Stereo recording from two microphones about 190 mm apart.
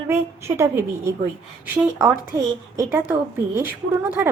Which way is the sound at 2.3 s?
15° right (ahead or behind).